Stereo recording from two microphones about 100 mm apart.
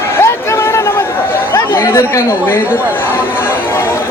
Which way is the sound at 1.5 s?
25° left (ahead or behind).